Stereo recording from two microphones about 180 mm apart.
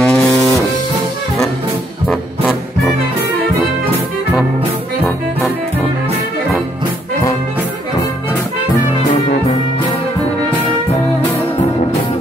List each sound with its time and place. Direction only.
0.0 s music: 5° left (ahead or behind)
0.3 s music: 20° left (ahead or behind)
2.0 s music: centre (ahead or behind)